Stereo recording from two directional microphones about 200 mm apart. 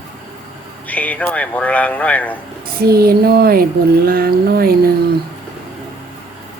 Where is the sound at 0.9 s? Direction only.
5° left (ahead or behind).